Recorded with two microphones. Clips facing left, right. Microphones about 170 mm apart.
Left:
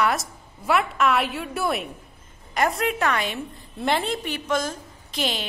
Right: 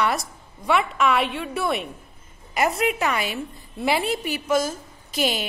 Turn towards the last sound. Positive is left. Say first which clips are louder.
# right 3 dB
turn(degrees=-5)  # may be behind; listen again after turning